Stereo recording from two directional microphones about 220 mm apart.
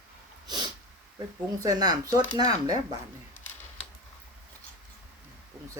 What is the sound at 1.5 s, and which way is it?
Speech, 15° right (ahead or behind).